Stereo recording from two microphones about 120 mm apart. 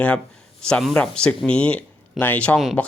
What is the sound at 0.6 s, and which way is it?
Speech, 5° left (ahead or behind).